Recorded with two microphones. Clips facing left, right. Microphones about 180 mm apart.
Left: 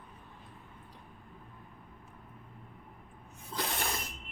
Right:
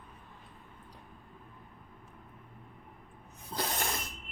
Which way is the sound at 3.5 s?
35° right (ahead or behind).